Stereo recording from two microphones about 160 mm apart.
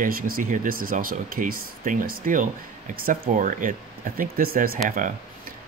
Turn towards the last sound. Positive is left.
turn(degrees=-55)  # may be behind; listen again after turning